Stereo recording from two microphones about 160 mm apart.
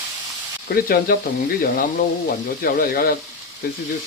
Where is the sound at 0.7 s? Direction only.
65° left (ahead or behind).